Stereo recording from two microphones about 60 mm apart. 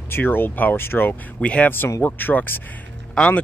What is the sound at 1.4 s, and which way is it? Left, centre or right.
Speech, left.